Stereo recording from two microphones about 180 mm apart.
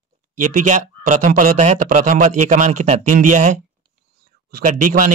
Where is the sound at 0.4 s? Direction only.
45° right (ahead or behind).